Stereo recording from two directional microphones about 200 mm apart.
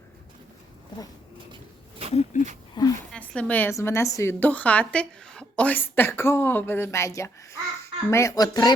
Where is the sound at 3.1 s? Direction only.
5° left (ahead or behind).